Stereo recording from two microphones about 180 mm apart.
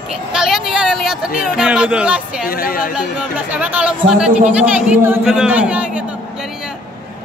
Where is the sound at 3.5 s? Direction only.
5° right (ahead or behind).